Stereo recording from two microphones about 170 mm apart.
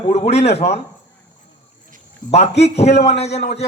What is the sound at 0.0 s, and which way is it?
Speech, 40° left (ahead or behind).